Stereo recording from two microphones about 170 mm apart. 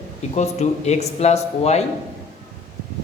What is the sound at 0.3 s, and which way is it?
Speech, 40° left (ahead or behind).